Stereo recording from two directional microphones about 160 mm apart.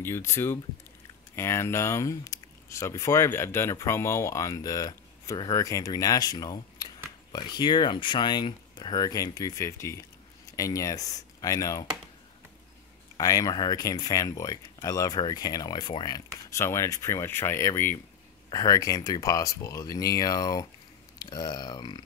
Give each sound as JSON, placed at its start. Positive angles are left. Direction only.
{"t": 0.0, "sound": "speech", "side_deg": 15}
{"t": 13.2, "sound": "speech", "side_deg": 20}